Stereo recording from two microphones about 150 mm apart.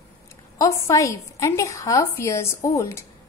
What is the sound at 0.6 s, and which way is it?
A woman's voice, 20° left (ahead or behind).